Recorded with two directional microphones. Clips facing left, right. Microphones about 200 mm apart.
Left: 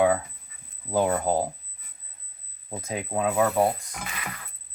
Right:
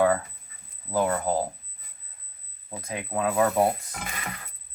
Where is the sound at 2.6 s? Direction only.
20° left (ahead or behind).